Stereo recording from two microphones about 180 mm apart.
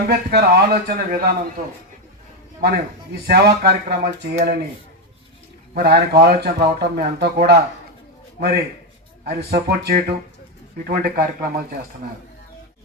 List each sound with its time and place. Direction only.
0.0 s speech: 60° right (ahead or behind)
5.7 s speech: 60° right (ahead or behind)